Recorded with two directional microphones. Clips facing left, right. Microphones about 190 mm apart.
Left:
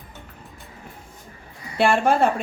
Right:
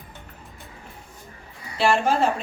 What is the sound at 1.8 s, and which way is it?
Speech, 55° left (ahead or behind).